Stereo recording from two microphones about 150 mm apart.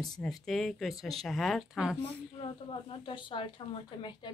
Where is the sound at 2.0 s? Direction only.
35° left (ahead or behind).